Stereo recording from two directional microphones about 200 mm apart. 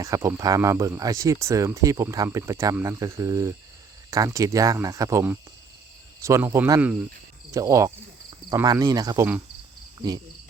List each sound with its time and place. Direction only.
0.0 s speech: 15° right (ahead or behind)